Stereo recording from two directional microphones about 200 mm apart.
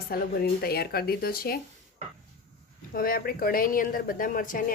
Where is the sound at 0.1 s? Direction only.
50° left (ahead or behind).